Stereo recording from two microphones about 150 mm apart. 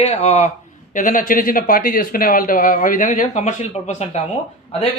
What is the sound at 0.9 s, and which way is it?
Speech, 60° left (ahead or behind).